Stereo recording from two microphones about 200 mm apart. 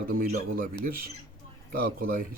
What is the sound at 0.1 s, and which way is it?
Speech, 45° right (ahead or behind).